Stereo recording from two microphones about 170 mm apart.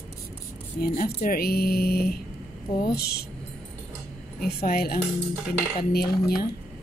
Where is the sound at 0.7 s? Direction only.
60° left (ahead or behind).